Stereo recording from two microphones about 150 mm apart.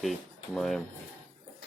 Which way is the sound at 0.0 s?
Centre (ahead or behind).